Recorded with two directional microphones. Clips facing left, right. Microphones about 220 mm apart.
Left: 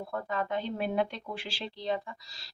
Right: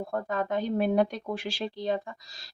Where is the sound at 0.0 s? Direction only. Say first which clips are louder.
Right 4 dB; 45° right (ahead or behind).